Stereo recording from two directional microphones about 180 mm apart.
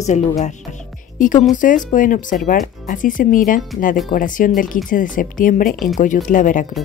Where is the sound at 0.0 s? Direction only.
40° left (ahead or behind).